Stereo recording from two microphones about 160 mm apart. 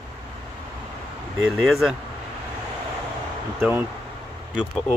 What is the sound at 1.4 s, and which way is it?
Speech, centre (ahead or behind).